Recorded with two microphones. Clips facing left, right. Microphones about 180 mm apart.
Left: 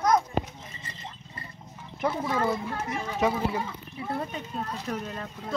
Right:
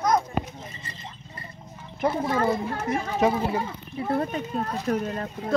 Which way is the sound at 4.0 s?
55° right (ahead or behind).